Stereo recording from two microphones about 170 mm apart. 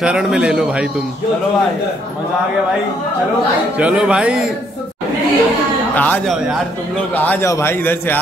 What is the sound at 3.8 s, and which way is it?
Speech, 5° right (ahead or behind).